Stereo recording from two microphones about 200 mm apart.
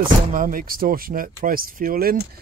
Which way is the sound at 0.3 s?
45° right (ahead or behind).